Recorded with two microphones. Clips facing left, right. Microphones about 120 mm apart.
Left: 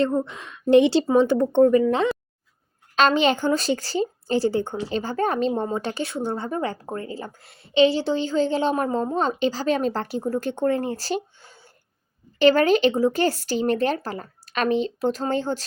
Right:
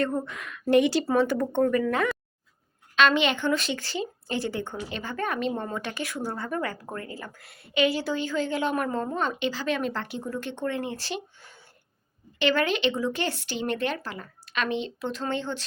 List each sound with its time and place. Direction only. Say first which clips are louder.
0.0 s speech: left 5 dB; 25° left (ahead or behind)
2.9 s speech: left 4 dB; 35° left (ahead or behind)